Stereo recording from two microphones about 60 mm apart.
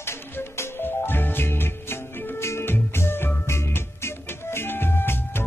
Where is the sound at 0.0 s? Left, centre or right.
Left.